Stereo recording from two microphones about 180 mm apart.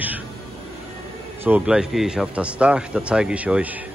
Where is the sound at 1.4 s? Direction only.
10° right (ahead or behind).